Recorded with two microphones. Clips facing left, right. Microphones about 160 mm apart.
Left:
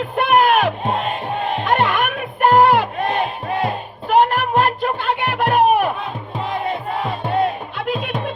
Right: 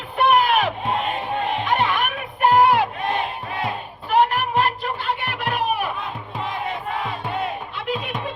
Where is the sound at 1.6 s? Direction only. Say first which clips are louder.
Left 6 dB; 55° left (ahead or behind).